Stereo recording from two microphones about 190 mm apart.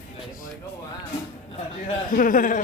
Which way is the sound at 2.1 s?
45° left (ahead or behind).